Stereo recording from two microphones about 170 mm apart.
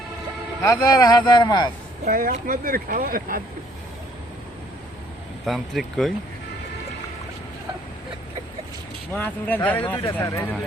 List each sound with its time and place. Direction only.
0.6 s speech: 20° left (ahead or behind)
2.0 s speech: 55° right (ahead or behind)
5.5 s speech: centre (ahead or behind)
9.1 s speech: 10° left (ahead or behind)